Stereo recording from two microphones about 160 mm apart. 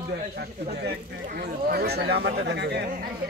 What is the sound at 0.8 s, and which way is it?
Speech, 90° right.